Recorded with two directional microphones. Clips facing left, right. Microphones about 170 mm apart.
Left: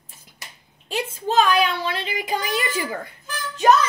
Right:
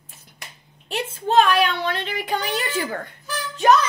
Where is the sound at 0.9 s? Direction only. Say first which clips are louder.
Right 2 dB; 10° left (ahead or behind).